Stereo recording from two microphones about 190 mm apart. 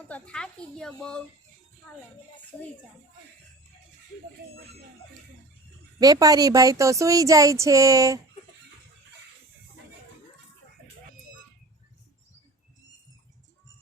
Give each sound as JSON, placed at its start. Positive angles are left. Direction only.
{"t": 0.1, "sound": "speech", "side_deg": 5}
{"t": 6.0, "sound": "a woman's voice", "side_deg": -20}